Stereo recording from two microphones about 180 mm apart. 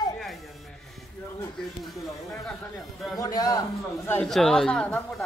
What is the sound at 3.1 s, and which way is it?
Speech, 20° left (ahead or behind).